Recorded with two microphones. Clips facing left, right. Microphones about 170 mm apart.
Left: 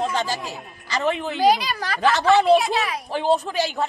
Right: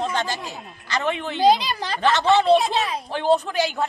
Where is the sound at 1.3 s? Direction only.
20° right (ahead or behind).